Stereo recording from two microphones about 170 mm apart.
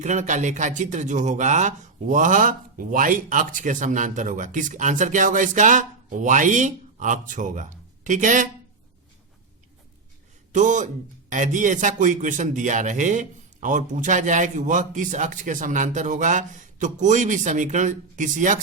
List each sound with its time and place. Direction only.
0.0 s speech: 45° right (ahead or behind)
10.5 s speech: 45° right (ahead or behind)